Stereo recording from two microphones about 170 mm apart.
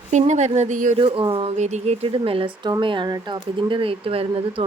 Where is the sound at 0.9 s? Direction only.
30° right (ahead or behind).